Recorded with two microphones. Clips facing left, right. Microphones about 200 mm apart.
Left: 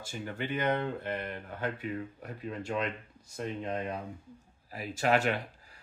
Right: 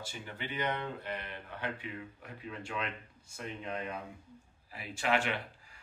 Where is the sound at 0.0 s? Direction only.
50° left (ahead or behind).